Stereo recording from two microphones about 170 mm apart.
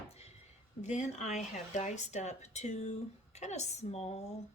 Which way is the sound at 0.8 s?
45° left (ahead or behind).